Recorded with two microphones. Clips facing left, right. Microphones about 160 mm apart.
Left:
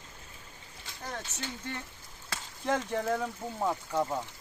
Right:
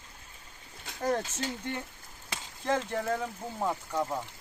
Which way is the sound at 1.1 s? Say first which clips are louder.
Right 10 dB; 40° right (ahead or behind).